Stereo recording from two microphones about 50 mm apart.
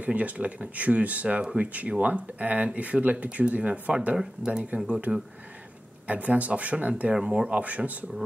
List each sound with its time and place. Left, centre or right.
0.0 s speech: right
1.7 s speech: right
6.0 s speech: right